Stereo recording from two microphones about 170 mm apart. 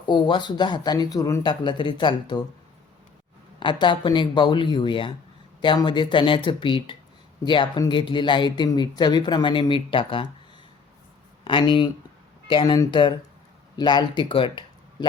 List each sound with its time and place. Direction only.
0.0 s speech: 30° left (ahead or behind)
3.6 s speech: 30° left (ahead or behind)
11.4 s speech: 30° left (ahead or behind)